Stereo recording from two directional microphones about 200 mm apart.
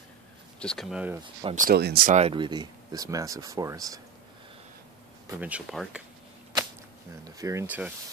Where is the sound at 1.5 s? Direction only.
50° right (ahead or behind).